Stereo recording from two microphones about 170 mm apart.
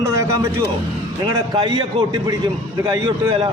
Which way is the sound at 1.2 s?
25° right (ahead or behind).